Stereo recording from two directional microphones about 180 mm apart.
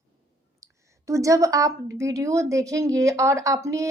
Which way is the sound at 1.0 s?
15° right (ahead or behind).